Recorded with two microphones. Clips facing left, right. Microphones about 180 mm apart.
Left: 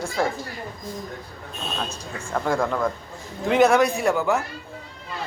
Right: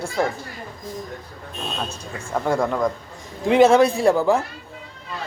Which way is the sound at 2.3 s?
10° right (ahead or behind).